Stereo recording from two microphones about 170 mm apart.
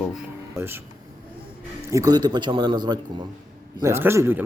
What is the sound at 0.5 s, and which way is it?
Speech, 15° right (ahead or behind).